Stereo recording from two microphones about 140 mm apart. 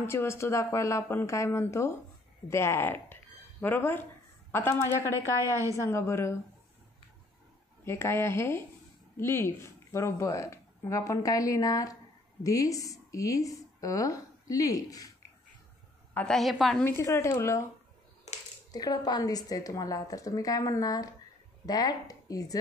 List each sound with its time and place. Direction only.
0.0 s speech: 20° left (ahead or behind)
7.8 s a woman's voice: 20° left (ahead or behind)
16.1 s a woman's voice: 10° left (ahead or behind)
16.3 s a woman's voice: centre (ahead or behind)
16.8 s speech: 20° left (ahead or behind)
18.7 s speech: 25° left (ahead or behind)